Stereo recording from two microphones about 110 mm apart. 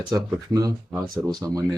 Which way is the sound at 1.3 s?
35° right (ahead or behind).